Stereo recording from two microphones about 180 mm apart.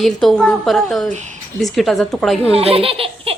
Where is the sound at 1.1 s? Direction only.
40° right (ahead or behind).